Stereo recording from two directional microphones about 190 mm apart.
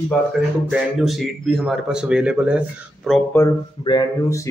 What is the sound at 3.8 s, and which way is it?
Speech, 25° left (ahead or behind).